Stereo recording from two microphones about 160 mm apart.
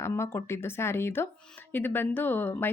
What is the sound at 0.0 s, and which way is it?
Speech, 15° left (ahead or behind).